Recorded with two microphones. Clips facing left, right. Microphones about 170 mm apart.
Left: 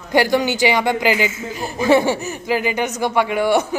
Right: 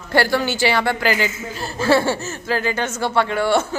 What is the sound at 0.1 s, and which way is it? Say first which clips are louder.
A woman's voice: left 2 dB; 15° left (ahead or behind).